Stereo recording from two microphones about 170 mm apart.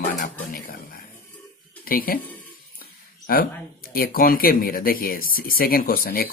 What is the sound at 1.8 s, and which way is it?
Speech, 55° left (ahead or behind).